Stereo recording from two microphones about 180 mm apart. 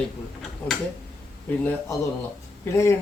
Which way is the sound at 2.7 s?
15° left (ahead or behind).